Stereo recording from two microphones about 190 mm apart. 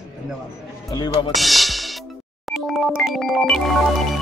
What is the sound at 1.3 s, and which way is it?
Music, centre (ahead or behind).